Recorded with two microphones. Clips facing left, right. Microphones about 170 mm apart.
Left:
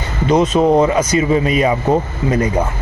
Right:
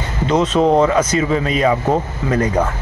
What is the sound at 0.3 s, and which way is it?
A man's voice, 10° left (ahead or behind).